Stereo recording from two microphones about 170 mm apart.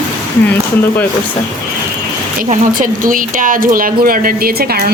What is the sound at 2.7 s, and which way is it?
Speech, 55° right (ahead or behind).